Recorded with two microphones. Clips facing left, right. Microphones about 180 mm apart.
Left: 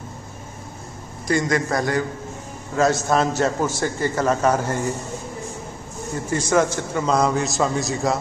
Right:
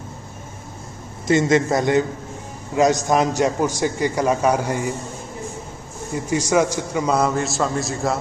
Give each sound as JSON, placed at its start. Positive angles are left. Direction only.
{"t": 1.2, "sound": "a man's voice", "side_deg": -25}
{"t": 6.5, "sound": "a man's voice", "side_deg": -10}